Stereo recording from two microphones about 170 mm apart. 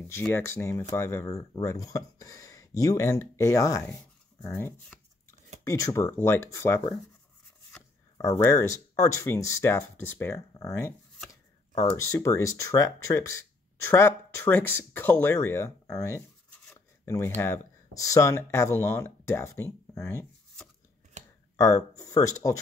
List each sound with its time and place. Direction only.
0.0 s speech: 10° left (ahead or behind)
8.5 s speech: 15° left (ahead or behind)
11.7 s speech: 40° left (ahead or behind)
12.0 s speech: 20° left (ahead or behind)
21.5 s speech: 20° left (ahead or behind)